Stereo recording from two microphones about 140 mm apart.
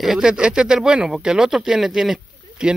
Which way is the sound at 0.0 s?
5° right (ahead or behind).